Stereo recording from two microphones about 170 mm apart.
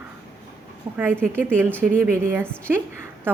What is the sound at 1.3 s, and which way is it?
A woman's voice, 15° right (ahead or behind).